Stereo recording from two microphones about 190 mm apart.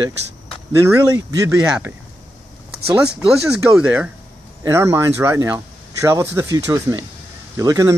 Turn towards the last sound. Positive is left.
turn(degrees=-15)  # may be behind; listen again after turning